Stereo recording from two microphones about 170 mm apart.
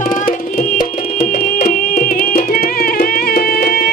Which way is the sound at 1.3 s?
45° left (ahead or behind).